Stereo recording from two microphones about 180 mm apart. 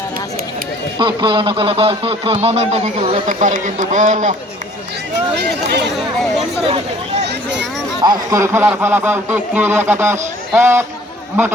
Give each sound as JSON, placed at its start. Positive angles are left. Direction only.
{"t": 0.9, "sound": "a man's voice", "side_deg": -25}
{"t": 6.7, "sound": "speech", "side_deg": -35}
{"t": 8.0, "sound": "speech", "side_deg": -20}